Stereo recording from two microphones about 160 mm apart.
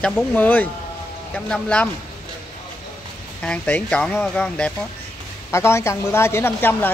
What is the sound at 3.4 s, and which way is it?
A woman's voice, 5° left (ahead or behind).